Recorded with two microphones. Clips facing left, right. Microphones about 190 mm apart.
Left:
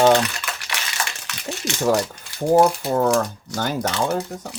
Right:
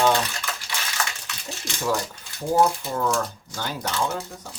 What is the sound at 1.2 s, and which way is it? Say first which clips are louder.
Rattle: left 7 dB; 70° left (ahead or behind).